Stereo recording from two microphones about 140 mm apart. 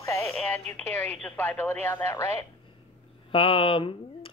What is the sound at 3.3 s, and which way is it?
Speech, 40° left (ahead or behind).